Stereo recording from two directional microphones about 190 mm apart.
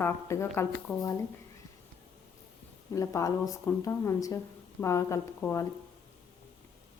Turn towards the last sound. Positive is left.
turn(degrees=15)  # may be behind; listen again after turning